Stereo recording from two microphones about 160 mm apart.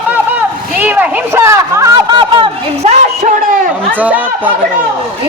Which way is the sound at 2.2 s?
30° right (ahead or behind).